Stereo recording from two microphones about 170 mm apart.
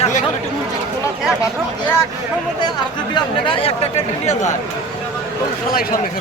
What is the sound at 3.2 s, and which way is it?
Speech, 30° left (ahead or behind).